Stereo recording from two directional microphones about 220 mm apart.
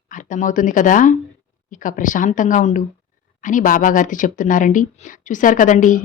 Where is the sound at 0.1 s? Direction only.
35° left (ahead or behind).